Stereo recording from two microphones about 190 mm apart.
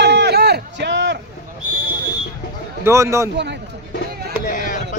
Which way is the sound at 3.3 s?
65° right (ahead or behind).